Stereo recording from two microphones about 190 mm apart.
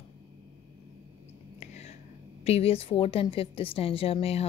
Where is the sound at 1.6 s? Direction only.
35° left (ahead or behind).